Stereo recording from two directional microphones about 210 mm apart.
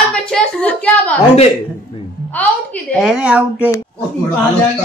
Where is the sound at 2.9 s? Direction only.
5° right (ahead or behind).